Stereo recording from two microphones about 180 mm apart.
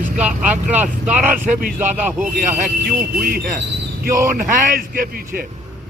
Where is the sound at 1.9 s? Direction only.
10° right (ahead or behind).